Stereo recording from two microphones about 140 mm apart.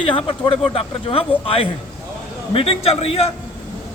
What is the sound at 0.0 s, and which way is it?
A man's voice, 40° left (ahead or behind).